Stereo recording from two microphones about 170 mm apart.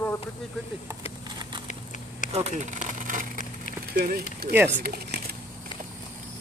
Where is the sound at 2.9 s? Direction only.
50° right (ahead or behind).